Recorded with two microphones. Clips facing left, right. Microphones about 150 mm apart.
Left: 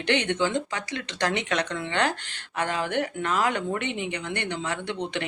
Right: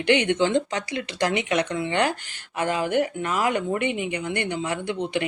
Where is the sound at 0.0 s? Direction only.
10° right (ahead or behind).